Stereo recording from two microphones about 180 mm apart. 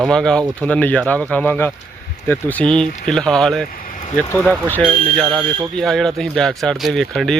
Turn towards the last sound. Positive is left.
turn(degrees=0)  # may be behind; listen again after turning